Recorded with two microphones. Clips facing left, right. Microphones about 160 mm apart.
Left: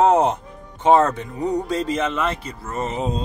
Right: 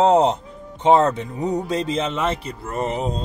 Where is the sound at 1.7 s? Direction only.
20° right (ahead or behind).